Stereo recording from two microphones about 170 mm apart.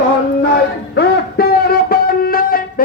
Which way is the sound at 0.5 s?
65° left (ahead or behind).